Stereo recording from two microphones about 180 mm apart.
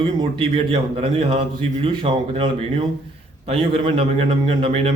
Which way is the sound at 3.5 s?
30° right (ahead or behind).